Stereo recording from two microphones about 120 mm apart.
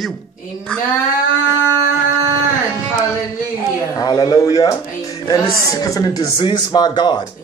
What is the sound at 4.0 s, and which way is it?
Speech, 35° left (ahead or behind).